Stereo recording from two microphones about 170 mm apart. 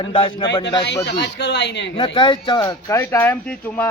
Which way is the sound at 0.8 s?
80° left.